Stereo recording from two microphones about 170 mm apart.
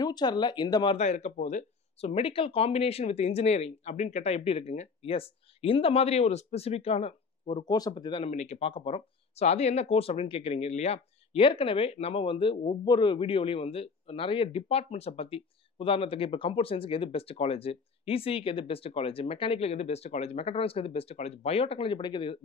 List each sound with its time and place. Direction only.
0.0 s speech: 25° left (ahead or behind)
0.9 s speech: 40° left (ahead or behind)
8.3 s speech: 40° left (ahead or behind)